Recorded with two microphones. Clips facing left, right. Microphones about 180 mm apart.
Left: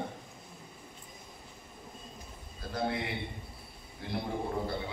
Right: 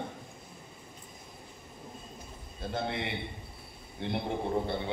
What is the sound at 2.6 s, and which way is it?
A man's voice, 25° right (ahead or behind).